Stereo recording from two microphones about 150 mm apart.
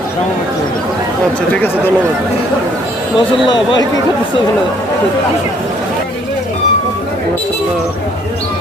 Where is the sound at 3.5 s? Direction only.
30° left (ahead or behind).